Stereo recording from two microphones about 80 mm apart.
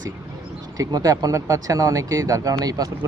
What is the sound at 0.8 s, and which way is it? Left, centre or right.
Speech, right.